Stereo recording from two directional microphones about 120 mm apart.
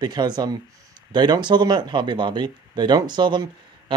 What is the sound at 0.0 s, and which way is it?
Speech, 35° right (ahead or behind).